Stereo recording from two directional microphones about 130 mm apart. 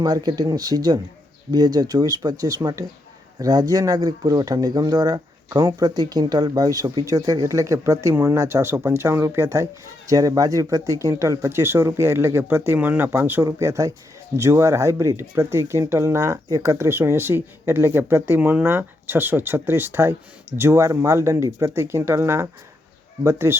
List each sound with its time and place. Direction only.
0.0 s speech: 30° right (ahead or behind)